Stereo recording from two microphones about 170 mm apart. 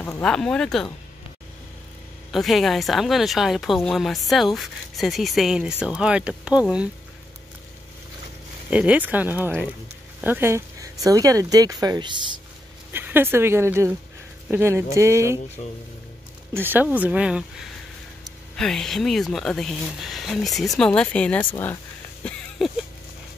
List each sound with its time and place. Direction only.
0.0 s speech: 10° left (ahead or behind)
2.3 s speech: centre (ahead or behind)
8.6 s speech: 10° right (ahead or behind); by 12.2 s 25° right (ahead or behind)
12.9 s a woman's voice: 10° right (ahead or behind)
16.5 s speech: 10° right (ahead or behind); by 21.7 s 10° left (ahead or behind)
22.2 s a sound: centre (ahead or behind)